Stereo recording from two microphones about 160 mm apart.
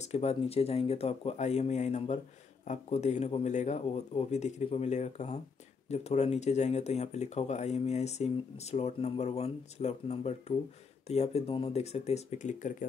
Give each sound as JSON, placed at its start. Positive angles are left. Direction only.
{"t": 0.0, "sound": "speech", "side_deg": 40}